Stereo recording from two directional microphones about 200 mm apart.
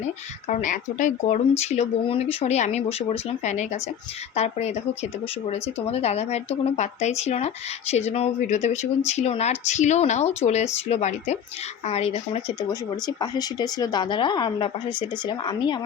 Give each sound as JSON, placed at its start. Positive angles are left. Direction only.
{"t": 0.4, "sound": "speech", "side_deg": 35}
{"t": 5.8, "sound": "speech", "side_deg": 30}
{"t": 13.1, "sound": "a woman's voice", "side_deg": 20}